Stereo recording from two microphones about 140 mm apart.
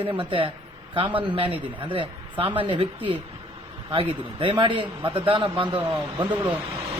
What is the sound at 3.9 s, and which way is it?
A man's voice, 40° right (ahead or behind).